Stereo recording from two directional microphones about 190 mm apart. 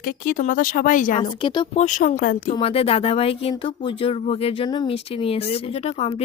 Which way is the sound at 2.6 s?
30° left (ahead or behind).